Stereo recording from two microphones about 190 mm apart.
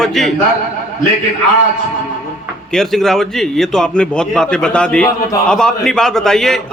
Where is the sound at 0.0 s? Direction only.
Centre (ahead or behind).